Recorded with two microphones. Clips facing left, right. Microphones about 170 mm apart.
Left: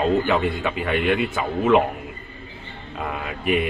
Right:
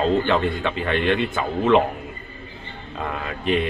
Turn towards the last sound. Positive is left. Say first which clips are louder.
# even
turn(degrees=10)  # may be behind; listen again after turning